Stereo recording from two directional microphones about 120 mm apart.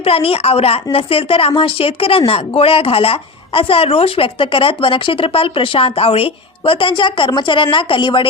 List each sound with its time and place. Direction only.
0.0 s a woman's voice: 50° left (ahead or behind)